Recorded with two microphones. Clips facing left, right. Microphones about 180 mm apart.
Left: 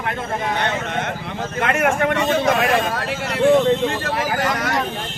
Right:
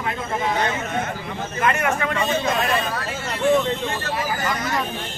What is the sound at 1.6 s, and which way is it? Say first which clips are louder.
Speech: left 3 dB; 60° left (ahead or behind).